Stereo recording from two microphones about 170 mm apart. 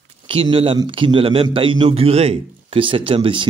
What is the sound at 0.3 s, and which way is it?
Speech, 35° right (ahead or behind).